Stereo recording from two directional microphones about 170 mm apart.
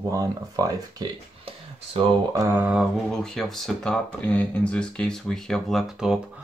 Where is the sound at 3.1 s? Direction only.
Centre (ahead or behind).